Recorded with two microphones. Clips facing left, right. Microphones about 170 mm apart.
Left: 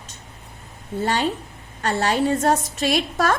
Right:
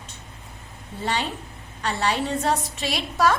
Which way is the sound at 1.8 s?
45° left (ahead or behind).